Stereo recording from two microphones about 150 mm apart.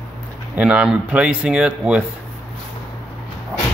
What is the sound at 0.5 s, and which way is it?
Speech, 10° right (ahead or behind).